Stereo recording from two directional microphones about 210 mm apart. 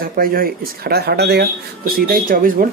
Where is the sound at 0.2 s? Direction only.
45° right (ahead or behind).